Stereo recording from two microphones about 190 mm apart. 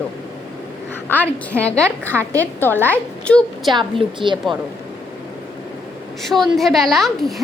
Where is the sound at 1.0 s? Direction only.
10° left (ahead or behind).